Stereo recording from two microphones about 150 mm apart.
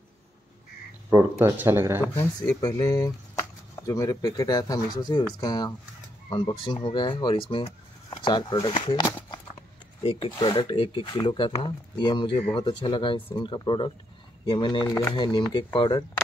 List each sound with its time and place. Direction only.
1.1 s speech: 15° right (ahead or behind)
2.0 s speech: 20° left (ahead or behind)
10.0 s speech: 35° left (ahead or behind)